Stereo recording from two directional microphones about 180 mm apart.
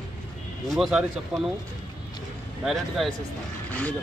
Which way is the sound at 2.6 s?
Centre (ahead or behind).